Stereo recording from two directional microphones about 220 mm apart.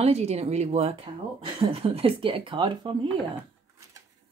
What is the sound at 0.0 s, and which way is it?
Speech, 30° right (ahead or behind).